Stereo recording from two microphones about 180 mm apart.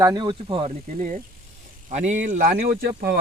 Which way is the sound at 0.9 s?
45° right (ahead or behind).